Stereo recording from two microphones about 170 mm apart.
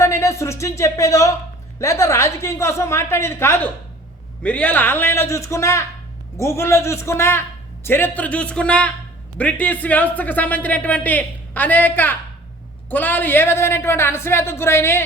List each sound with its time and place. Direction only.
0.0 s speech: 15° left (ahead or behind)